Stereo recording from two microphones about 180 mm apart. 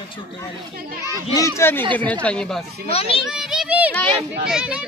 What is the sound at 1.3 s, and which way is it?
A man's voice, 15° left (ahead or behind).